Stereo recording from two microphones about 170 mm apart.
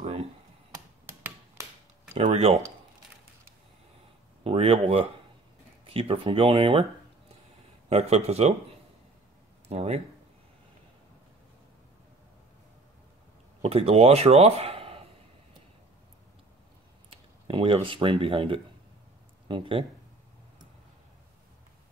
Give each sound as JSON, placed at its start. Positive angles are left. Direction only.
{"t": 0.0, "sound": "a sound", "side_deg": -35}
{"t": 2.2, "sound": "speech", "side_deg": -40}
{"t": 4.4, "sound": "speech", "side_deg": -35}
{"t": 7.9, "sound": "speech", "side_deg": -40}
{"t": 9.7, "sound": "speech", "side_deg": -35}
{"t": 13.6, "sound": "speech", "side_deg": -35}
{"t": 17.1, "sound": "speech", "side_deg": -30}